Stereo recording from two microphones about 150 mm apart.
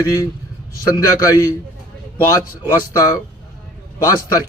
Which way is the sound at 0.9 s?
20° left (ahead or behind).